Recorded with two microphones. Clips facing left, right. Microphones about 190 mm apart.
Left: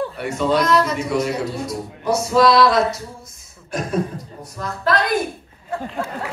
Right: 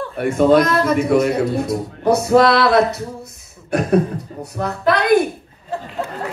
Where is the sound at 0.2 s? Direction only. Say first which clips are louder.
Right 8 dB; 55° right (ahead or behind).